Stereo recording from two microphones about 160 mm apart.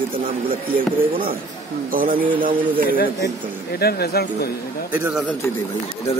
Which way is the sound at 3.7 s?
75° left (ahead or behind).